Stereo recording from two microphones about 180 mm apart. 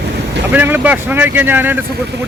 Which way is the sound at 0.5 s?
10° right (ahead or behind).